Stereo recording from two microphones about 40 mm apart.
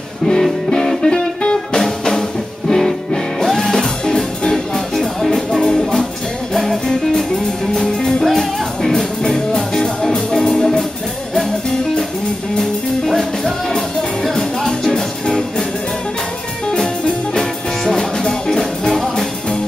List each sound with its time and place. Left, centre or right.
0.3 s music: centre
1.8 s music: centre
4.0 s music: centre
4.7 s music: centre
6.5 s music: centre
16.6 s music: centre